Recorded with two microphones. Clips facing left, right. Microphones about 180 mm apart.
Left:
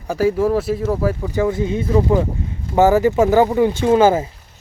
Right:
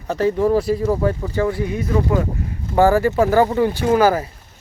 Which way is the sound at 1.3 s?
15° left (ahead or behind).